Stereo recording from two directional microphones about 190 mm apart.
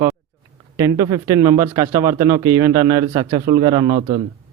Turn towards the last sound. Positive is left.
turn(degrees=-25)  # may be behind; listen again after turning